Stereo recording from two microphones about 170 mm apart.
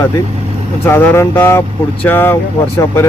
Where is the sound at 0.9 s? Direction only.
15° left (ahead or behind).